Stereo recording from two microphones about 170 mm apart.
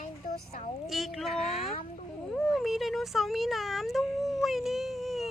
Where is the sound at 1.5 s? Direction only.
35° left (ahead or behind).